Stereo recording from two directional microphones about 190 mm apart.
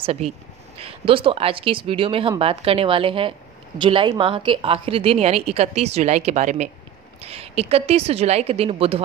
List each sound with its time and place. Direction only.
0.0 s a woman's voice: 30° right (ahead or behind)